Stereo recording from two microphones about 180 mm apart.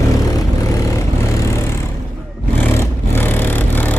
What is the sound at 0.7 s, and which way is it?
Vehicle, 15° left (ahead or behind).